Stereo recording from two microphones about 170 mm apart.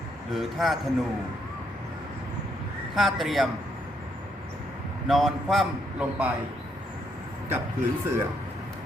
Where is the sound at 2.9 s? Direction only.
Centre (ahead or behind).